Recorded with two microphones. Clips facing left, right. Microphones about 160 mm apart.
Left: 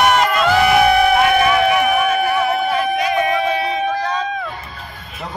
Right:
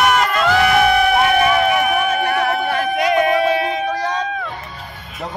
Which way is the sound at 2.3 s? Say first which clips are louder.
Left 1 dB; 55° right (ahead or behind).